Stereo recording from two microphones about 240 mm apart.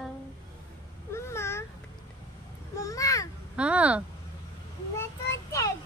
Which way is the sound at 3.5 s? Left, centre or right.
Centre.